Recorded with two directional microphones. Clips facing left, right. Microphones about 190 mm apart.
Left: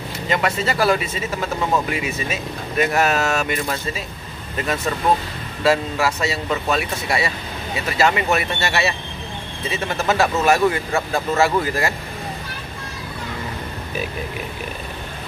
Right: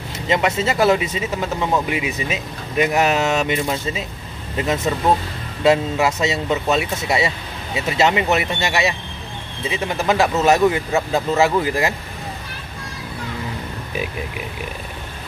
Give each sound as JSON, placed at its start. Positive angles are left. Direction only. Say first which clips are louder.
{"t": 0.3, "sound": "speech", "louder": "right 2 dB", "side_deg": -20}